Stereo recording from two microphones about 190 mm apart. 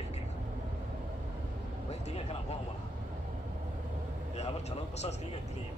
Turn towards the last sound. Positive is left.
turn(degrees=35)  # may be behind; listen again after turning